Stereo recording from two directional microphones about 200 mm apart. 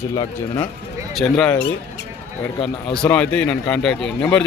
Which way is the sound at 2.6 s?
5° left (ahead or behind).